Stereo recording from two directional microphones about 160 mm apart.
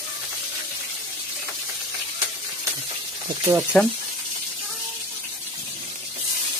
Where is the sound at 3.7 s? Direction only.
10° left (ahead or behind).